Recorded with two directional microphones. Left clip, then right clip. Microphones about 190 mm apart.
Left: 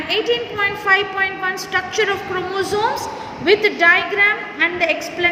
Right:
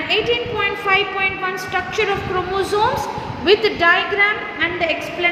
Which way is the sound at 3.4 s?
20° left (ahead or behind).